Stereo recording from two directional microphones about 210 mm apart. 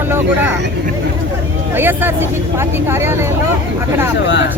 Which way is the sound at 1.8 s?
10° right (ahead or behind).